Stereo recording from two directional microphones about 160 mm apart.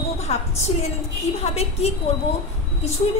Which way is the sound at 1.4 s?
40° left (ahead or behind).